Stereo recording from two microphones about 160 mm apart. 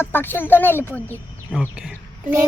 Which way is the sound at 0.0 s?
15° left (ahead or behind).